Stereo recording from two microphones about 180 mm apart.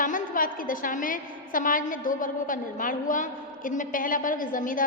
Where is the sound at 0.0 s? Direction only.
50° left (ahead or behind).